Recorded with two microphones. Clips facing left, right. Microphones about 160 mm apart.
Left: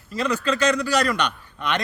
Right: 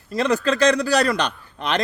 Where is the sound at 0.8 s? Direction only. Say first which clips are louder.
Right 2 dB; 35° right (ahead or behind).